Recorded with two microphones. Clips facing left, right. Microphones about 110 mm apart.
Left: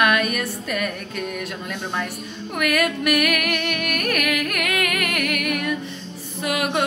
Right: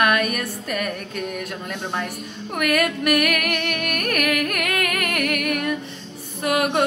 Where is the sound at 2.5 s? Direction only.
40° right (ahead or behind).